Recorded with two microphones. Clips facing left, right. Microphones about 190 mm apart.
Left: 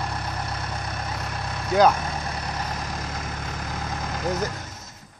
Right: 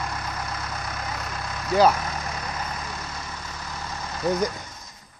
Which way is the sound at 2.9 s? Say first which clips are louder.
Left 3 dB; 55° left (ahead or behind).